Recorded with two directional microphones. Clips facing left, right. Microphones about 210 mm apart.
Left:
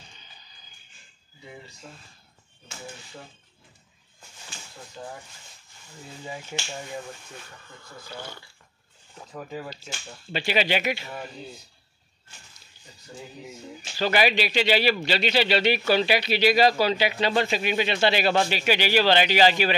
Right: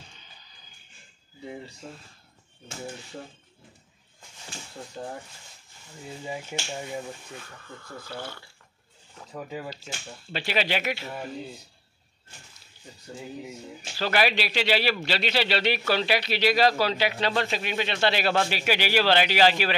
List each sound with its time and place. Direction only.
5.0 s speech: 40° right (ahead or behind)
6.2 s speech: 10° right (ahead or behind)
9.3 s speech: 5° right (ahead or behind)
13.9 s speech: centre (ahead or behind)